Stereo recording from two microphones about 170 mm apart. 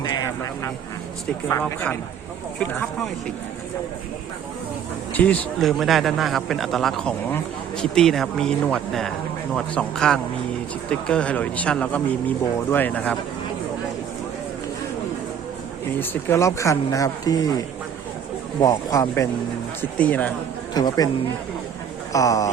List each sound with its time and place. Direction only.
0.0 s a sound: 20° left (ahead or behind)
1.5 s a man's voice: 10° left (ahead or behind)
5.1 s a man's voice: 10° left (ahead or behind)
16.0 s a man's voice: 15° left (ahead or behind)
20.7 s speech: 20° left (ahead or behind)
22.1 s speech: 20° left (ahead or behind)